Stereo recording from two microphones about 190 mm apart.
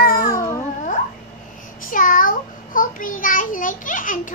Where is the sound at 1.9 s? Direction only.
45° left (ahead or behind).